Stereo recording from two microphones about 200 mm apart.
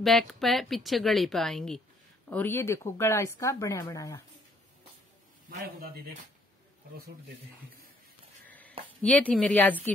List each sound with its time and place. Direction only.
0.0 s a woman's voice: centre (ahead or behind); by 4.2 s 15° left (ahead or behind)
5.8 s speech: 50° right (ahead or behind)
8.5 s a sound: 10° left (ahead or behind)
9.0 s speech: 5° left (ahead or behind)